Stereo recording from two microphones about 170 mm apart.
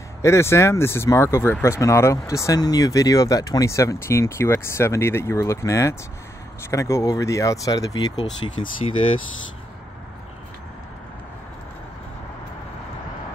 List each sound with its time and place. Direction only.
0.2 s speech: 15° left (ahead or behind)
8.8 s speech: 35° left (ahead or behind)